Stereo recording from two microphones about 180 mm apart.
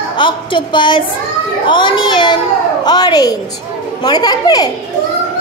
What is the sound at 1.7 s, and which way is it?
A child's voice, 25° left (ahead or behind).